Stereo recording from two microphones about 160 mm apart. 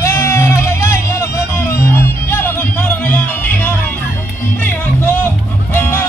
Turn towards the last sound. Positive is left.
turn(degrees=15)  # may be behind; listen again after turning